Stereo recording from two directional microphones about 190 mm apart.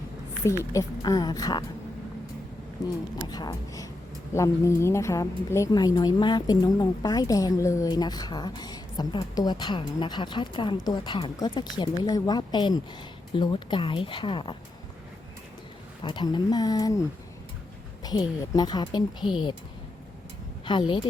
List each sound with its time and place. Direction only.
0.4 s a woman's voice: 15° left (ahead or behind)
2.8 s a woman's voice: 20° left (ahead or behind)
16.0 s a woman's voice: 25° left (ahead or behind)
18.0 s a woman's voice: 20° left (ahead or behind)
20.7 s a woman's voice: 25° left (ahead or behind)